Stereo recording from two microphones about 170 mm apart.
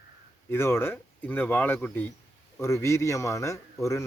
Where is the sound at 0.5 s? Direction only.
15° left (ahead or behind).